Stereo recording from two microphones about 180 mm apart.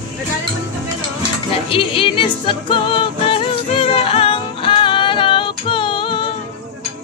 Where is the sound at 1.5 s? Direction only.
30° left (ahead or behind).